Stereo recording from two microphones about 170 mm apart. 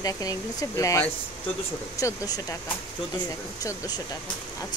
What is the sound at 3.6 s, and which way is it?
Speech, 25° left (ahead or behind).